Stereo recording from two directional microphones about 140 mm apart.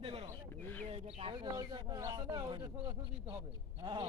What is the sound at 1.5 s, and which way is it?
Speech, 25° right (ahead or behind).